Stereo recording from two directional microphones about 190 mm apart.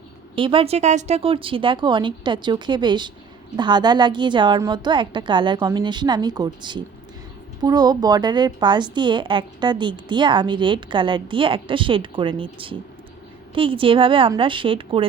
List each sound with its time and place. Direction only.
0.3 s a woman's voice: 30° right (ahead or behind)